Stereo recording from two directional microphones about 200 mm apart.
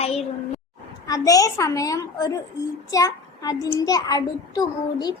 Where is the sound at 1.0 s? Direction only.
20° left (ahead or behind).